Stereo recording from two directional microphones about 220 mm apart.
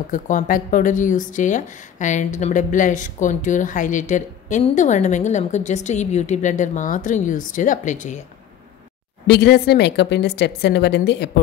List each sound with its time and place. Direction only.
0.1 s speech: 35° left (ahead or behind)
9.3 s a woman's voice: 45° left (ahead or behind)